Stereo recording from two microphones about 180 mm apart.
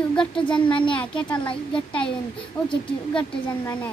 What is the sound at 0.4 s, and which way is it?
Speech, 25° left (ahead or behind).